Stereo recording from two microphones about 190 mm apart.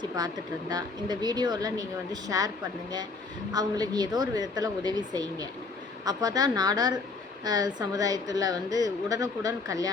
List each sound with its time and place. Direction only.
0.7 s a woman's voice: 20° right (ahead or behind)
3.5 s a woman's voice: 20° right (ahead or behind)